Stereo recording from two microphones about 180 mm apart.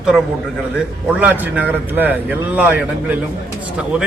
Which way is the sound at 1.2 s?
10° right (ahead or behind).